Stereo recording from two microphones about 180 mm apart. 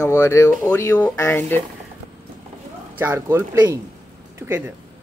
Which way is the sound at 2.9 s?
10° right (ahead or behind).